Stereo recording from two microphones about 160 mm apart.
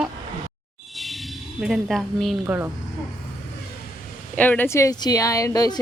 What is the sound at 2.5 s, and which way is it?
Speech, 15° right (ahead or behind).